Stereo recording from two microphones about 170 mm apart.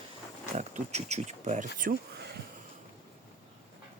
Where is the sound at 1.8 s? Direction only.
55° right (ahead or behind).